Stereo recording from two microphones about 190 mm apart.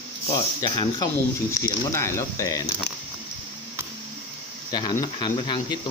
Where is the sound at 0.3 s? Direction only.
20° left (ahead or behind).